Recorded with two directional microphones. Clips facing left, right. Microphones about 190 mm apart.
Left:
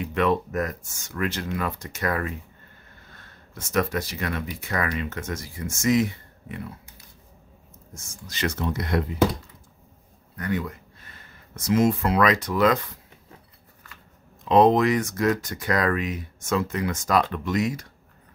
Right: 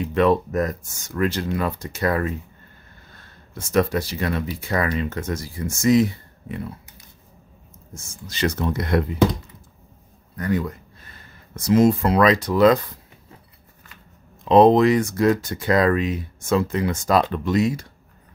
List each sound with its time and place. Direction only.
0.0 s speech: 35° right (ahead or behind)
3.5 s speech: 30° right (ahead or behind)
7.9 s speech: 25° right (ahead or behind)
8.5 s speech: 50° right (ahead or behind)
10.3 s speech: 40° right (ahead or behind)
14.5 s speech: 30° right (ahead or behind)